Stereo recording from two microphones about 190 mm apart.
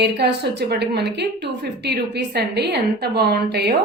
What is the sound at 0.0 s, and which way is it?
A woman's voice, 60° right (ahead or behind).